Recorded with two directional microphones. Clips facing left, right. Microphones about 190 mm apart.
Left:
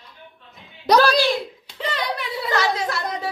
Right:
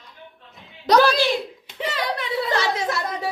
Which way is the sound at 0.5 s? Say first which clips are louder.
Even; centre (ahead or behind).